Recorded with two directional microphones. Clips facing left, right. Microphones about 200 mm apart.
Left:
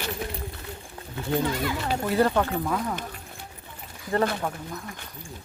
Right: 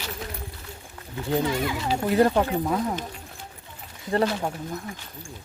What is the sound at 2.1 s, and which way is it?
Speech, 15° right (ahead or behind).